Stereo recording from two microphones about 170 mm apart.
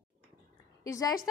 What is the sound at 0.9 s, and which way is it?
Speech, 20° left (ahead or behind).